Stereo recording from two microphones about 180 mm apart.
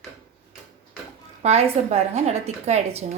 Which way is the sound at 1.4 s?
35° right (ahead or behind).